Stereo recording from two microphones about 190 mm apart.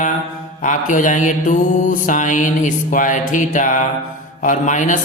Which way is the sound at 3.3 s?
45° left (ahead or behind).